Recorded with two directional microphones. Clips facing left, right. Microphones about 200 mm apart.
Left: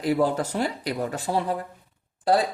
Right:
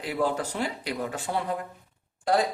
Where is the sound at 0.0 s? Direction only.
40° left (ahead or behind).